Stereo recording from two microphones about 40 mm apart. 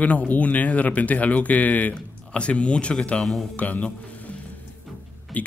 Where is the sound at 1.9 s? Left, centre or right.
Left.